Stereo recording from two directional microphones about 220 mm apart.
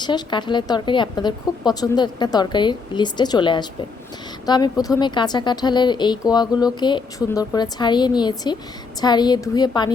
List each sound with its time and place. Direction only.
0.0 s a woman's voice: 20° left (ahead or behind)